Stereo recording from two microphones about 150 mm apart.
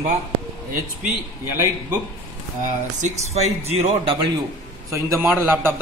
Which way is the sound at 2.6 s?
50° right (ahead or behind).